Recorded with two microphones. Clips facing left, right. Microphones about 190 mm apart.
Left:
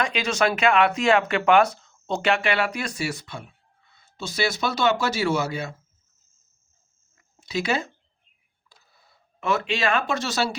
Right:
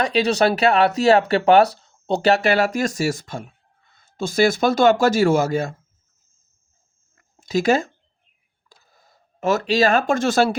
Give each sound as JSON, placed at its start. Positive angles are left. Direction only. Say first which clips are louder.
{"t": 0.0, "sound": "speech", "louder": "right 5 dB", "side_deg": -35}
{"t": 7.2, "sound": "a sound", "louder": "right 6 dB", "side_deg": -45}
{"t": 8.9, "sound": "speech", "louder": "right 4 dB", "side_deg": -45}